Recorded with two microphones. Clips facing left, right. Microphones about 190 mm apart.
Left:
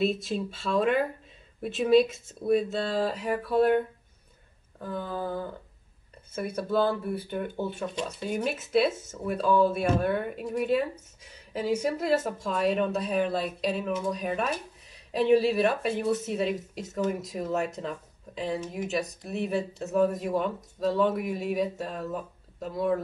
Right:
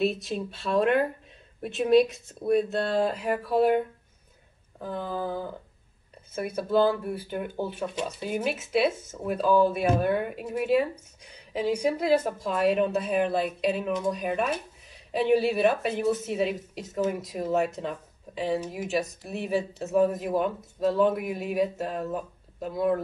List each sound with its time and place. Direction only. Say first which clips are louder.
0.3 s speech: left 1 dB; 5° right (ahead or behind)
1.6 s speech: even; centre (ahead or behind)
3.1 s speech: right 1 dB; centre (ahead or behind)